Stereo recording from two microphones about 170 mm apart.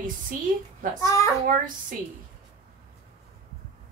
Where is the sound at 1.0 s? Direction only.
15° left (ahead or behind).